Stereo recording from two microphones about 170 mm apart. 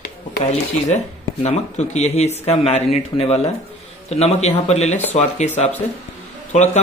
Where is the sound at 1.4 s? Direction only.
40° left (ahead or behind).